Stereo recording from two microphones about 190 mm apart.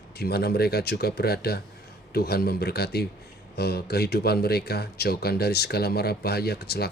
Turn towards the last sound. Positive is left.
turn(degrees=55)  # may be behind; listen again after turning